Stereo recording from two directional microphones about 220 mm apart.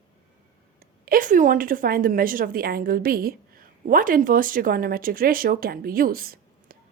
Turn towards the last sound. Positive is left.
turn(degrees=-40)  # may be behind; listen again after turning